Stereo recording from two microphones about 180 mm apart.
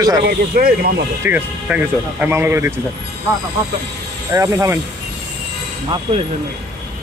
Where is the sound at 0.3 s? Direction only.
55° right (ahead or behind).